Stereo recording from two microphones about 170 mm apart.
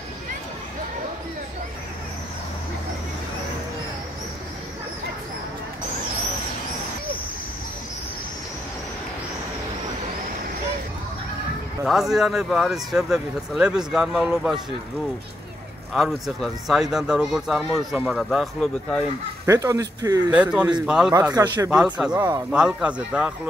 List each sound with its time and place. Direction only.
11.8 s speech: centre (ahead or behind)
15.9 s speech: centre (ahead or behind)
19.4 s speech: 15° right (ahead or behind)
20.3 s speech: 5° right (ahead or behind)
21.1 s speech: 20° right (ahead or behind)
21.6 s speech: 5° right (ahead or behind)
22.1 s speech: 20° right (ahead or behind)
22.5 s speech: 5° right (ahead or behind)